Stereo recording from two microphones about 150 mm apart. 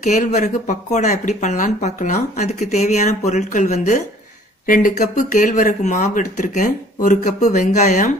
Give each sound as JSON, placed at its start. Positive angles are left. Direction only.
{"t": 0.0, "sound": "speech", "side_deg": 55}
{"t": 4.6, "sound": "speech", "side_deg": 65}